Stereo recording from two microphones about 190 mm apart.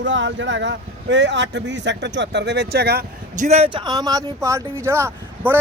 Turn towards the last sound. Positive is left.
turn(degrees=-10)  # may be behind; listen again after turning